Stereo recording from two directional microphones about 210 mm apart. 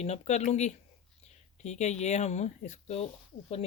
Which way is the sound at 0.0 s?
30° left (ahead or behind).